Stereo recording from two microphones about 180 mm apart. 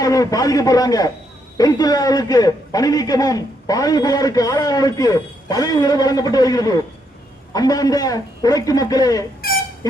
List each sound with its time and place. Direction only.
0.0 s a man's voice: 20° left (ahead or behind)